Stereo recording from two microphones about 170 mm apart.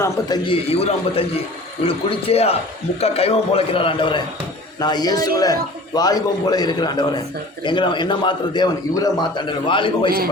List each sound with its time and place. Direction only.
0.4 s a man's voice: 35° left (ahead or behind)